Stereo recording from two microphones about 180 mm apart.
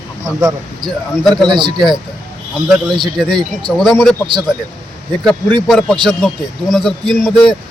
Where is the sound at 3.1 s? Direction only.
Centre (ahead or behind).